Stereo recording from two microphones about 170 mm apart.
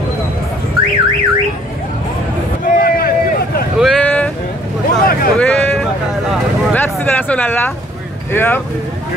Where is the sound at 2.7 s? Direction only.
60° left (ahead or behind).